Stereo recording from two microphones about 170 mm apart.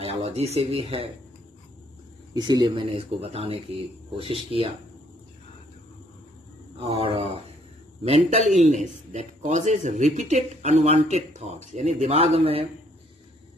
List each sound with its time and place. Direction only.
0.0 s a man's voice: 35° right (ahead or behind)
2.3 s a man's voice: 25° right (ahead or behind)
6.8 s a man's voice: 35° right (ahead or behind)